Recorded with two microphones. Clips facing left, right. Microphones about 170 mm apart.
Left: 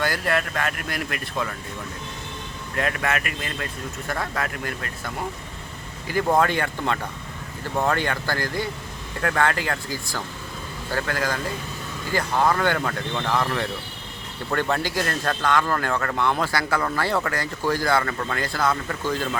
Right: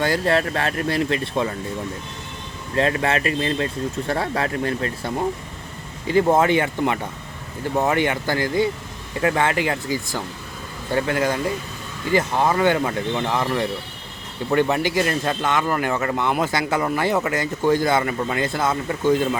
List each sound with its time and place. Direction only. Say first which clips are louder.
0.0 s speech: right 5 dB; 25° right (ahead or behind)
2.7 s speech: right 5 dB; 25° right (ahead or behind)
13.4 s speech: right 3 dB; 5° right (ahead or behind)